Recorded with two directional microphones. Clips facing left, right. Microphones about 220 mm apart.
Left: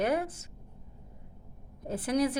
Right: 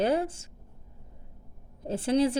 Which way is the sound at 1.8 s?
25° right (ahead or behind).